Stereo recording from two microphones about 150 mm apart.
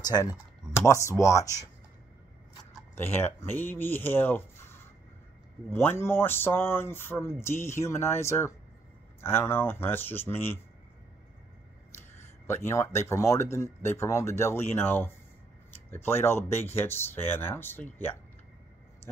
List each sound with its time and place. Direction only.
0.0 s speech: 25° left (ahead or behind)
3.0 s speech: 15° left (ahead or behind)
12.2 s speech: 15° left (ahead or behind)